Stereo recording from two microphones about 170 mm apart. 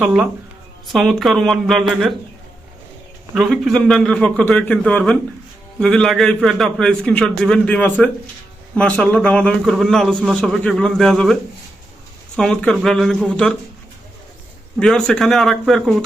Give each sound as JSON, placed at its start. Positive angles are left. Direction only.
{"t": 0.0, "sound": "a man's voice", "side_deg": -5}
{"t": 3.3, "sound": "a man's voice", "side_deg": -5}
{"t": 12.4, "sound": "a man's voice", "side_deg": 5}
{"t": 14.8, "sound": "a man's voice", "side_deg": 5}